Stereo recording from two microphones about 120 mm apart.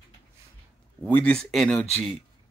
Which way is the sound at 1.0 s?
10° left (ahead or behind).